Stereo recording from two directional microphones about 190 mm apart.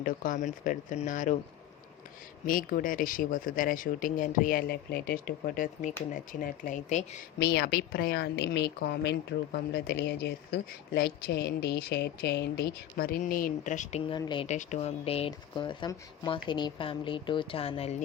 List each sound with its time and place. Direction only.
0.0 s speech: 45° left (ahead or behind)
2.5 s speech: 45° left (ahead or behind)
7.3 s a woman's voice: 60° left (ahead or behind); by 14.0 s 40° left (ahead or behind)
14.0 s speech: 25° left (ahead or behind)
14.4 s speech: 40° left (ahead or behind)